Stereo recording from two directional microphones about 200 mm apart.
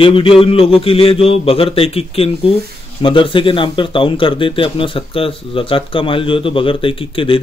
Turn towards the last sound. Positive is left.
turn(degrees=25)  # may be behind; listen again after turning